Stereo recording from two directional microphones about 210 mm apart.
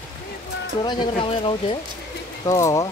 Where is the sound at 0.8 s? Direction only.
25° left (ahead or behind).